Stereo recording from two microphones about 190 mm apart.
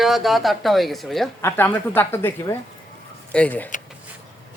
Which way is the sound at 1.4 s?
10° left (ahead or behind).